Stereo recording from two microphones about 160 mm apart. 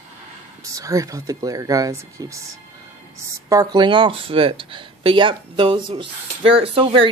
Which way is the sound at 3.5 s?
25° right (ahead or behind).